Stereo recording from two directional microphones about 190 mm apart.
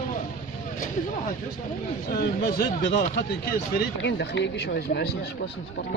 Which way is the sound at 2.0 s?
50° left (ahead or behind).